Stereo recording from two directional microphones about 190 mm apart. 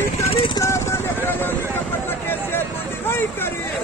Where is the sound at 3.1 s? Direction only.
10° left (ahead or behind).